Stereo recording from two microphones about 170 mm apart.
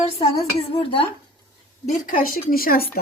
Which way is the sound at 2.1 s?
55° left (ahead or behind).